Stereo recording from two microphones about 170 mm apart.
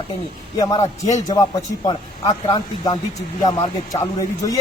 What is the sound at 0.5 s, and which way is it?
Speech, 20° left (ahead or behind).